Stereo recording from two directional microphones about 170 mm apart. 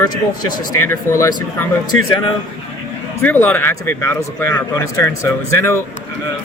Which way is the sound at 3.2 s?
10° left (ahead or behind).